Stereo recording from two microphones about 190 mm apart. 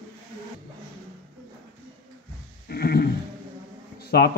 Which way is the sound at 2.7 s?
55° left (ahead or behind).